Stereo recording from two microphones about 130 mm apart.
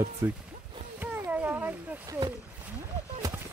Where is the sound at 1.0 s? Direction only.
15° right (ahead or behind).